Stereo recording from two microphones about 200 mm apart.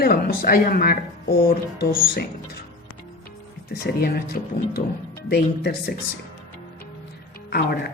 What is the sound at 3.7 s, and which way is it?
Speech, 50° left (ahead or behind).